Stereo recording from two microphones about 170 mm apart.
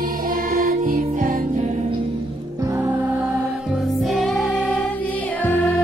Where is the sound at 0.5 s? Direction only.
55° right (ahead or behind).